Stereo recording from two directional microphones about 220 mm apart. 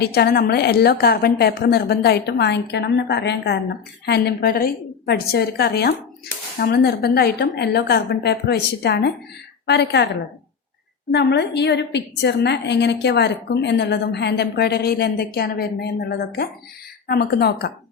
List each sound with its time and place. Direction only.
0.0 s a woman's voice: 45° left (ahead or behind)
11.1 s a woman's voice: 50° left (ahead or behind)